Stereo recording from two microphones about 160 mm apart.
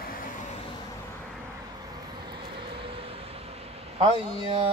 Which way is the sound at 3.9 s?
30° right (ahead or behind).